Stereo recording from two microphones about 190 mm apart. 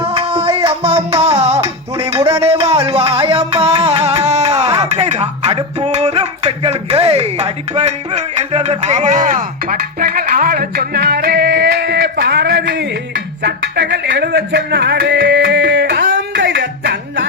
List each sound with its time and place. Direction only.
0.0 s music: 30° right (ahead or behind); by 17.2 s 65° right (ahead or behind)